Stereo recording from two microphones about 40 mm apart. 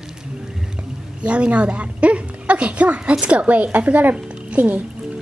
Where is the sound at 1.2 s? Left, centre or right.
Right.